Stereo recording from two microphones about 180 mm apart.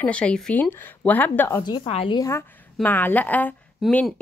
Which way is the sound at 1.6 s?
25° left (ahead or behind).